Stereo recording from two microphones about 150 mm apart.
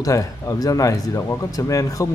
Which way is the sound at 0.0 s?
20° left (ahead or behind).